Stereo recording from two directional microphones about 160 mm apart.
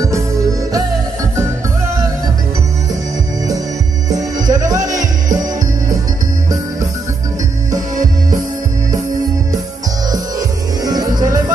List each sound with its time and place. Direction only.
4.1 s music: 20° right (ahead or behind)
10.8 s music: 25° right (ahead or behind)